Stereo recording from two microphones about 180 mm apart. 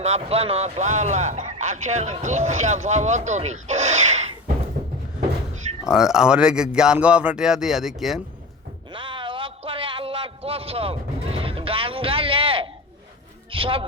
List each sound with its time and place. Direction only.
0.0 s speech: 35° right (ahead or behind)
5.9 s speech: 5° right (ahead or behind)
8.9 s a sound: 30° right (ahead or behind)